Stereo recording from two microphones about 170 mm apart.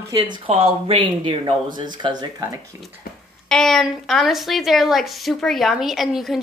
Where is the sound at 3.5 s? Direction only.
5° left (ahead or behind).